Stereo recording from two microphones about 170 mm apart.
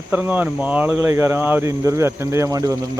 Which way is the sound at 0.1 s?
10° right (ahead or behind).